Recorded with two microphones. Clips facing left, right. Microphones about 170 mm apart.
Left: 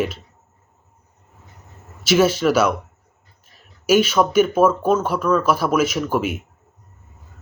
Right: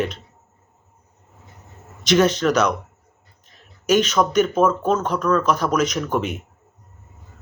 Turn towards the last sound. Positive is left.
turn(degrees=5)  # may be behind; listen again after turning